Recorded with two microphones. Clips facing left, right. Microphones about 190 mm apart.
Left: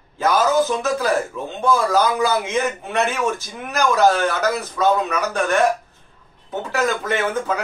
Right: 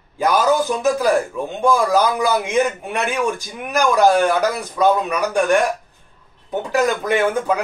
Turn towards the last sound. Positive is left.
turn(degrees=-15)  # may be behind; listen again after turning